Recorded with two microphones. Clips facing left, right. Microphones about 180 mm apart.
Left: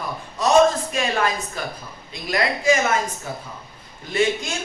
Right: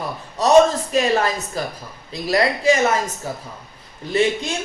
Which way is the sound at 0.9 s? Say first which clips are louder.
Right 4 dB; 35° right (ahead or behind).